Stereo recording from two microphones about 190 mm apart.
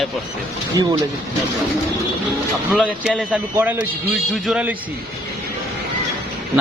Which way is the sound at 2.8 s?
Centre (ahead or behind).